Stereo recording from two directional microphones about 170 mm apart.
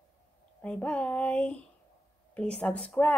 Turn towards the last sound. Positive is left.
turn(degrees=10)  # may be behind; listen again after turning